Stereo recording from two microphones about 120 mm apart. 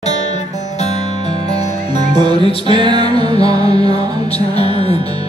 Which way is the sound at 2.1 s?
40° right (ahead or behind).